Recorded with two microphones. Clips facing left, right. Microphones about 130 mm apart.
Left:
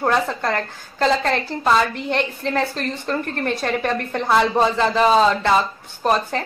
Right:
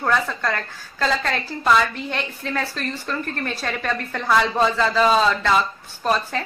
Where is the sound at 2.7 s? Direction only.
20° left (ahead or behind).